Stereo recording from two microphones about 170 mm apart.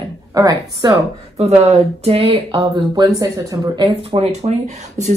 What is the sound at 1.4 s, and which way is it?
Speech, 40° right (ahead or behind).